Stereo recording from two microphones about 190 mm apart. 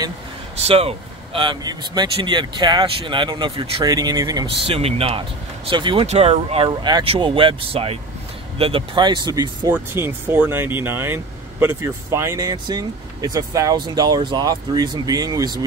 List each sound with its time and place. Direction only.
0.6 s speech: 30° right (ahead or behind)